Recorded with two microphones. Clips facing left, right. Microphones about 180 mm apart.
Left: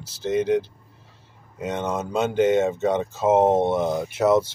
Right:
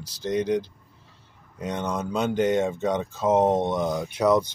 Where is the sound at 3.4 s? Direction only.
25° left (ahead or behind).